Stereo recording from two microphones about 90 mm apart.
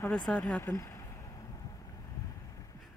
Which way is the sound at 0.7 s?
35° left (ahead or behind).